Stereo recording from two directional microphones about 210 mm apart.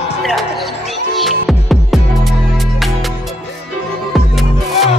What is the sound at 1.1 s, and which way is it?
Music, centre (ahead or behind).